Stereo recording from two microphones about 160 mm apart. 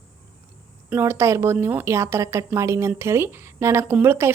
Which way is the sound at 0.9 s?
15° right (ahead or behind).